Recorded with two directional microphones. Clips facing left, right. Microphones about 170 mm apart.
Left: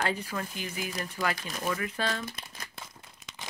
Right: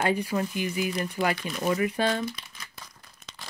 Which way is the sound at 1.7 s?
15° right (ahead or behind).